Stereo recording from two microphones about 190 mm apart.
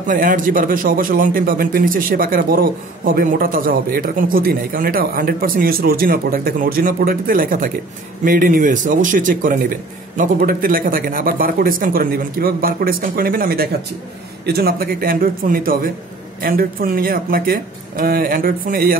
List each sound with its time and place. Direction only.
0.0 s a man's voice: 45° right (ahead or behind)